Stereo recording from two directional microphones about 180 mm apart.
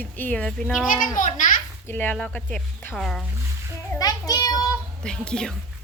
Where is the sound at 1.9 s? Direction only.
10° left (ahead or behind).